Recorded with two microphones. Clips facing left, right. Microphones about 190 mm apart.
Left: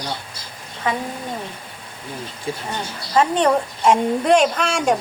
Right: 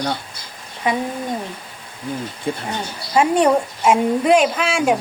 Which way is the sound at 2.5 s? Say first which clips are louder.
Right 3 dB; 60° right (ahead or behind).